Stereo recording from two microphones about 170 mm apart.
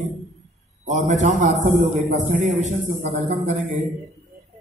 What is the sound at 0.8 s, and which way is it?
A man's voice, 45° right (ahead or behind).